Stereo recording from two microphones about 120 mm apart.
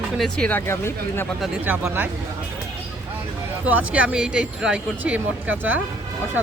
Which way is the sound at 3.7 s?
10° right (ahead or behind).